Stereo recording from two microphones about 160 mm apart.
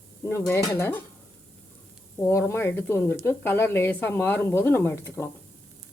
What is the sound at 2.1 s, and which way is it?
Speech, 15° left (ahead or behind).